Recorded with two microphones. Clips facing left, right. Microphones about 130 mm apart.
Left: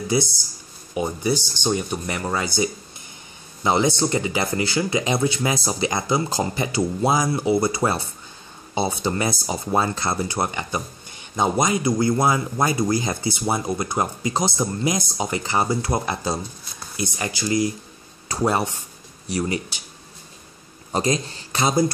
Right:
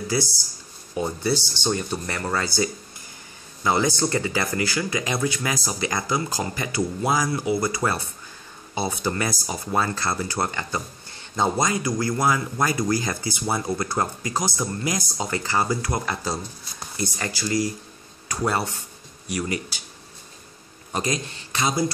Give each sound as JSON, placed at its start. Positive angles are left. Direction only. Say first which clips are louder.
{"t": 0.1, "sound": "speech", "louder": "left 4 dB", "side_deg": 20}
{"t": 19.2, "sound": "speech", "louder": "left 3 dB", "side_deg": 30}
{"t": 20.9, "sound": "a man's voice", "louder": "left 4 dB", "side_deg": 30}